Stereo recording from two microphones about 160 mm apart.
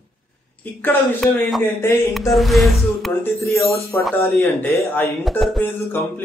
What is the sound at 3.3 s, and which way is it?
Speech, 20° left (ahead or behind).